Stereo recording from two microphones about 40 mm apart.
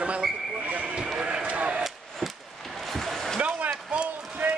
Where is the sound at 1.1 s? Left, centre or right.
Right.